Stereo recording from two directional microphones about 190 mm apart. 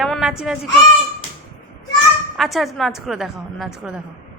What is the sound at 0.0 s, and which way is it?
Speech, centre (ahead or behind).